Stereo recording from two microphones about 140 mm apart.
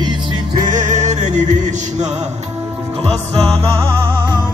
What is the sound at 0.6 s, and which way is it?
Music, 60° right (ahead or behind).